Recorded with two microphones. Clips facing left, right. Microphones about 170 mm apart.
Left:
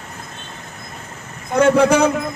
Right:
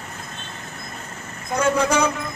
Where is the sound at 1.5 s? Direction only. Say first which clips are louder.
Left 7 dB; 60° left (ahead or behind).